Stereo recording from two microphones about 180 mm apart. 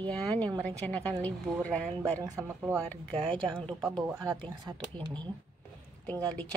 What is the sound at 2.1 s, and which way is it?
Speech, 20° right (ahead or behind).